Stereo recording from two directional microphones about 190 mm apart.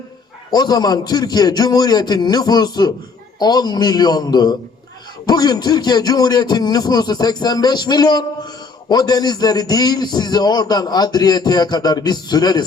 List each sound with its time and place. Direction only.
0.5 s a man's voice: 20° left (ahead or behind)